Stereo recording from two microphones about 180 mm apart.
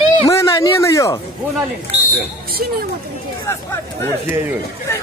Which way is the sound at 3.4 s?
15° left (ahead or behind).